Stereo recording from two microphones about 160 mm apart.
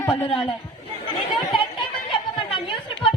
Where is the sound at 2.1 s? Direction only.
30° left (ahead or behind).